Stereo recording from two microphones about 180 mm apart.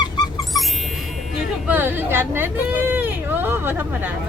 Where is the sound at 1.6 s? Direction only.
10° right (ahead or behind).